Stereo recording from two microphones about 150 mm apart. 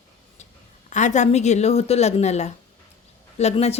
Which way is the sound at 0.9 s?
55° left (ahead or behind).